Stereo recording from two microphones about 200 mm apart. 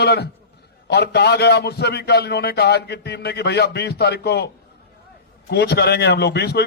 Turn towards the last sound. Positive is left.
turn(degrees=55)  # may be behind; listen again after turning